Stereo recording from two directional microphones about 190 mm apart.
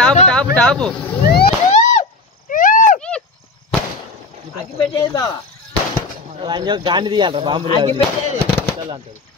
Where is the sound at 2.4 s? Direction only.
45° left (ahead or behind).